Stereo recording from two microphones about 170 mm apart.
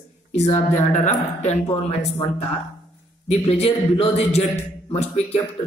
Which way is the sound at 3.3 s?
35° left (ahead or behind).